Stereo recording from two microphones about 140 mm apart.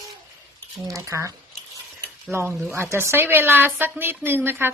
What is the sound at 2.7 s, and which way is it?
Speech, 15° right (ahead or behind).